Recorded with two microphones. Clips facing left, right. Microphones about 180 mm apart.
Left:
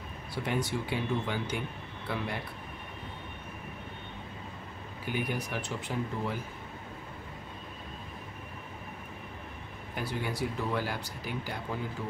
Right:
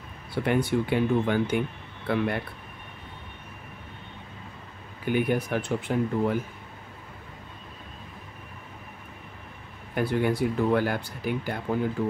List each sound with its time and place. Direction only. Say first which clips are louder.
0.3 s speech: right 8 dB; 60° right (ahead or behind)
5.0 s speech: right 9 dB; 55° right (ahead or behind)
9.9 s speech: right 10 dB; 55° right (ahead or behind)